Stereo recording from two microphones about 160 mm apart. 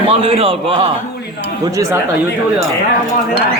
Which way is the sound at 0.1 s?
35° right (ahead or behind).